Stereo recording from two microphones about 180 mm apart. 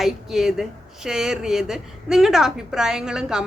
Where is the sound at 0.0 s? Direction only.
Centre (ahead or behind).